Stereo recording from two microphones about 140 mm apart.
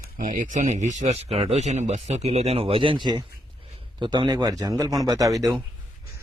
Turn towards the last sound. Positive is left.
turn(degrees=-25)  # may be behind; listen again after turning